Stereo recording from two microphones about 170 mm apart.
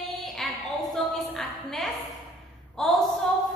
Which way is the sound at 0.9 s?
Centre (ahead or behind).